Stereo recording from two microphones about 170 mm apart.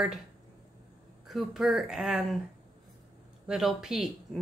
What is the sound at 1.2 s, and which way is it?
A woman's voice, centre (ahead or behind).